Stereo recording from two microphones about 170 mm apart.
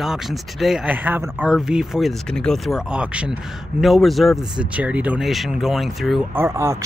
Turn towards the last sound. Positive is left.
turn(degrees=-15)  # may be behind; listen again after turning